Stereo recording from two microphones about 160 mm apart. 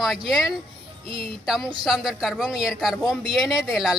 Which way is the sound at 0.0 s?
Centre (ahead or behind).